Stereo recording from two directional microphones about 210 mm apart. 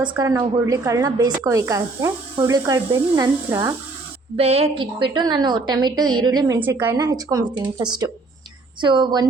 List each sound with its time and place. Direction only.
0.2 s speech: 15° right (ahead or behind)
4.4 s a woman's voice: 30° right (ahead or behind)